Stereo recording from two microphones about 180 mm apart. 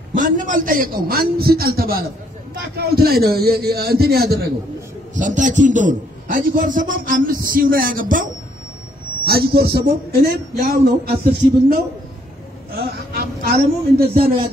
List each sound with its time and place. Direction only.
0.2 s speech: 50° right (ahead or behind)
5.1 s a man's voice: 45° right (ahead or behind)
12.7 s a man's voice: 60° right (ahead or behind)